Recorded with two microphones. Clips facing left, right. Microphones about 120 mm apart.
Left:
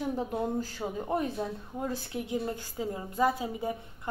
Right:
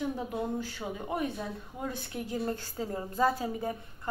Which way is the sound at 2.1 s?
20° left (ahead or behind).